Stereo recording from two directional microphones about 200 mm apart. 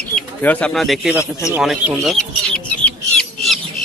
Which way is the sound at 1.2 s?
15° left (ahead or behind).